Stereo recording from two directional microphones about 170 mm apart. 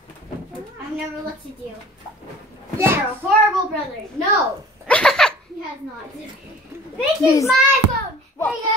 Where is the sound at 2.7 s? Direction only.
15° right (ahead or behind).